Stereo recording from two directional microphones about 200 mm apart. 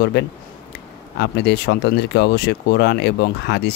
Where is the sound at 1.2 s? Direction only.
55° left (ahead or behind).